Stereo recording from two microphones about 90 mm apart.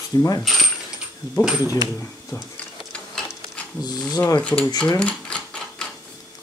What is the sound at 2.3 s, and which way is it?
Speech, 35° left (ahead or behind).